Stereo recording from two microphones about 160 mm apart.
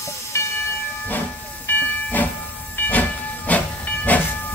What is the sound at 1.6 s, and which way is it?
Train, 10° left (ahead or behind).